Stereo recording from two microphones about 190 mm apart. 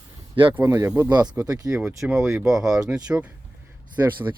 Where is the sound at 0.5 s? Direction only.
15° right (ahead or behind).